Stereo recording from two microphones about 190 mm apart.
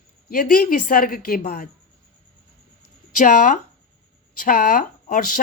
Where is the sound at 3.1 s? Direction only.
40° left (ahead or behind).